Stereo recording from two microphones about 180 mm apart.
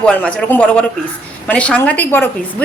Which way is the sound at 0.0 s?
5° left (ahead or behind).